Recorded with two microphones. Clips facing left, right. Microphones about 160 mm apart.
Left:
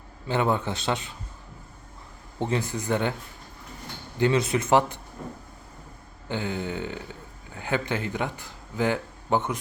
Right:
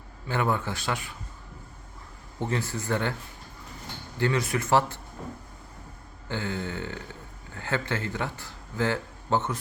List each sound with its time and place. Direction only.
0.3 s speech: 20° left (ahead or behind)
2.4 s speech: 20° left (ahead or behind)
4.2 s speech: 20° left (ahead or behind)
6.2 s a man's voice: 15° left (ahead or behind)